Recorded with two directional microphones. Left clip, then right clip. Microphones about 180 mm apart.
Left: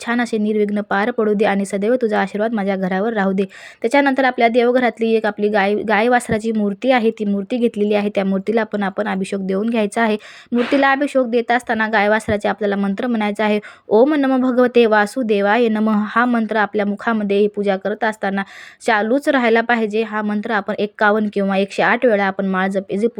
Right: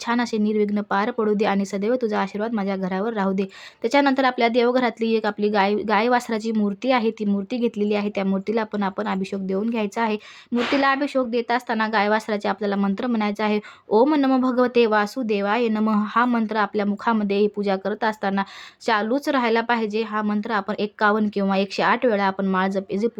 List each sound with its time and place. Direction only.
0.1 s a woman's voice: 15° left (ahead or behind)